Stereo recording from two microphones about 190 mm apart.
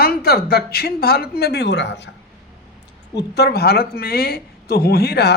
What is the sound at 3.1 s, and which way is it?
A woman's voice, 60° left (ahead or behind).